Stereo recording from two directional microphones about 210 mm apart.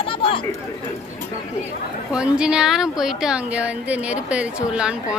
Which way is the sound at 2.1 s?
5° right (ahead or behind).